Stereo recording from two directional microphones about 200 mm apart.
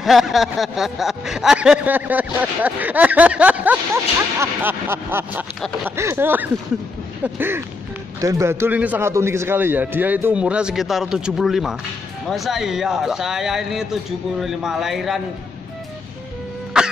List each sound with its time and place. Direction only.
0.0 s speech: centre (ahead or behind)
16.8 s cough: 5° right (ahead or behind)